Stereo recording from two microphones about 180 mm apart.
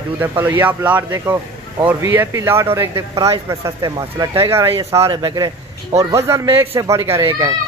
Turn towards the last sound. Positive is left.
turn(degrees=-20)  # may be behind; listen again after turning